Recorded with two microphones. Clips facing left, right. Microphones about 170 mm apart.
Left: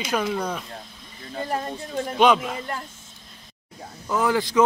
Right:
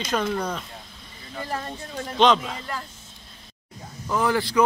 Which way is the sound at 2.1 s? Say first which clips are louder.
Left 1 dB; 10° left (ahead or behind).